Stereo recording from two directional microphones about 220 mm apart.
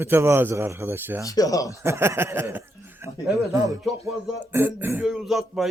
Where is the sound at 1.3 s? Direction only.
15° left (ahead or behind).